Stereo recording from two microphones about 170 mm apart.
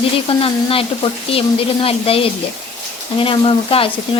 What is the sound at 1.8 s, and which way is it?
Frying, 35° left (ahead or behind).